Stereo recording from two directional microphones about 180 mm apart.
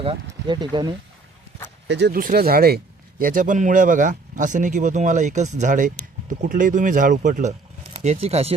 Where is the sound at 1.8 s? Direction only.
70° right (ahead or behind).